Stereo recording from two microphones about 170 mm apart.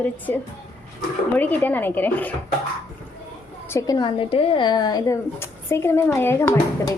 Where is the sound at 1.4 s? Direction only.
10° left (ahead or behind).